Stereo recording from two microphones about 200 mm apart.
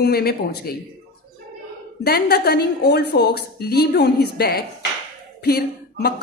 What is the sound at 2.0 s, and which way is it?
A woman's voice, 50° left (ahead or behind).